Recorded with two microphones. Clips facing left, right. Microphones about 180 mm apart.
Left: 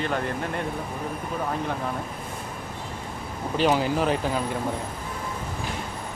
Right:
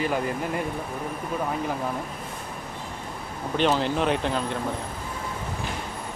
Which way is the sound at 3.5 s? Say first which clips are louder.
Left 1 dB; 5° left (ahead or behind).